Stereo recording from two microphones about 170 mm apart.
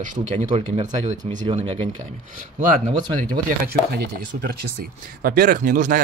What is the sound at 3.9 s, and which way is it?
Speech, 70° right (ahead or behind).